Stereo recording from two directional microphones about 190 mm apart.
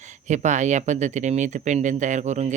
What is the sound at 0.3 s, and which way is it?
Speech, 40° right (ahead or behind).